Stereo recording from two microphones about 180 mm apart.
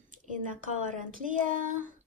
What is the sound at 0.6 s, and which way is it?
A woman's voice, 45° right (ahead or behind).